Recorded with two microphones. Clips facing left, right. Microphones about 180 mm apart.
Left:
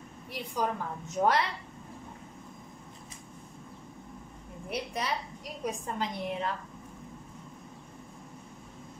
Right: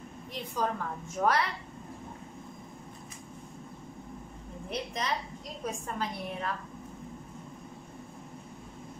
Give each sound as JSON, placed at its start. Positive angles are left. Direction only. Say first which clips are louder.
{"t": 0.3, "sound": "a woman's voice", "louder": "even", "side_deg": 15}
{"t": 4.6, "sound": "a woman's voice", "louder": "left 1 dB", "side_deg": 10}
{"t": 5.6, "sound": "a woman's voice", "louder": "left 1 dB", "side_deg": 20}